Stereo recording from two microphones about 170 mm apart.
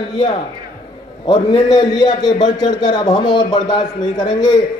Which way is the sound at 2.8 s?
25° left (ahead or behind).